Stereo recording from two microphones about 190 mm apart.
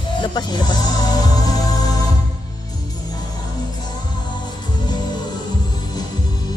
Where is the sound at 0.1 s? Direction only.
25° left (ahead or behind).